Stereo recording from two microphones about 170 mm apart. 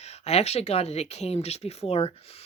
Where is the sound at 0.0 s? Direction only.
40° left (ahead or behind).